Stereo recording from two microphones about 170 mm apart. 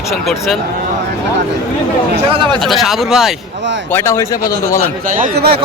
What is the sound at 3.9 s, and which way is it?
Speech, 15° left (ahead or behind).